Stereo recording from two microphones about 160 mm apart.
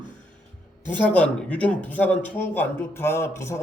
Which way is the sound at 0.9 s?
10° left (ahead or behind).